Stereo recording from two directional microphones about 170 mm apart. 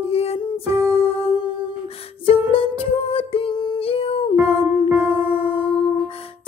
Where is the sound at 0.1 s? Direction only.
35° left (ahead or behind).